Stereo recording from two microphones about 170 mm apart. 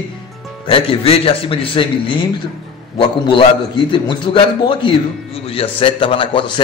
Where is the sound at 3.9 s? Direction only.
25° left (ahead or behind).